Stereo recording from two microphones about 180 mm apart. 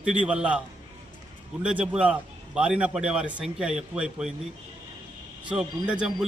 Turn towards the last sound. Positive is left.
turn(degrees=-5)  # may be behind; listen again after turning